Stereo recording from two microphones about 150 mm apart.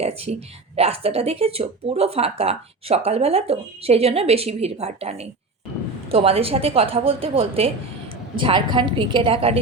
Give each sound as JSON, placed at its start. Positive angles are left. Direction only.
{"t": 0.0, "sound": "a woman's voice", "side_deg": -45}